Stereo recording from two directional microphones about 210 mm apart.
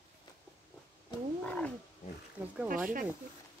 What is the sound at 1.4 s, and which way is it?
Roaring cats, 5° left (ahead or behind).